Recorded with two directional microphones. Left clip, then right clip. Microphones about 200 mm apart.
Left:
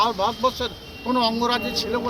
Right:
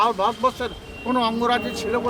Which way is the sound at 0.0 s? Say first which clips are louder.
Right 1 dB; centre (ahead or behind).